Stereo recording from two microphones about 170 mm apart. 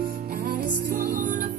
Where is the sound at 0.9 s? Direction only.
50° right (ahead or behind).